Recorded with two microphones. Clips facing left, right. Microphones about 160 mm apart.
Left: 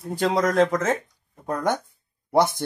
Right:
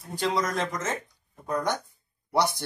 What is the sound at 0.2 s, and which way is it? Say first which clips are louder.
Speech: left 7 dB; 55° left (ahead or behind).